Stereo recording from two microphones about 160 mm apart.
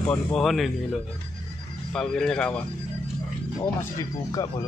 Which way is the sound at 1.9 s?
5° left (ahead or behind).